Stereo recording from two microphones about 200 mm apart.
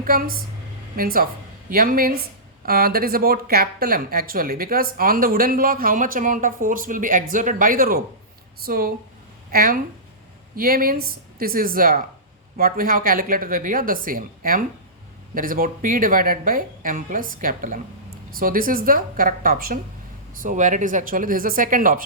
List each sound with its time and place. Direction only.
0.0 s speech: 45° right (ahead or behind)